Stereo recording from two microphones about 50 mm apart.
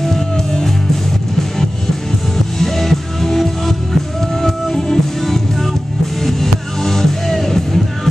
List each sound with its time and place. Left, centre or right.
0.0 s music: centre
2.6 s music: centre